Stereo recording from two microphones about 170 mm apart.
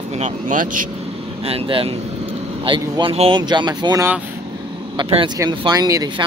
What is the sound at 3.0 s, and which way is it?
Speech, 35° right (ahead or behind).